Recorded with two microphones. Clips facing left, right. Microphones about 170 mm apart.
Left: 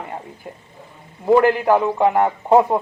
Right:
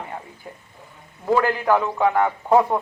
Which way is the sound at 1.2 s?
20° left (ahead or behind).